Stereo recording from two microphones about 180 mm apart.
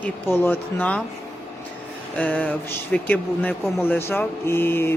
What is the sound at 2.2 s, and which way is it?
Speech, 10° left (ahead or behind).